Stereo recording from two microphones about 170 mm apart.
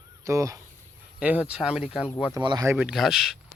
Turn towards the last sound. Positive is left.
turn(degrees=0)  # may be behind; listen again after turning